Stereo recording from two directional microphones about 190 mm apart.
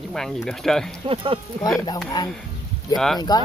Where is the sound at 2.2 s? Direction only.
20° left (ahead or behind).